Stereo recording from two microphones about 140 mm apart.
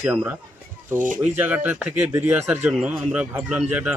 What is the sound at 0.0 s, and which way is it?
Speech, 10° right (ahead or behind).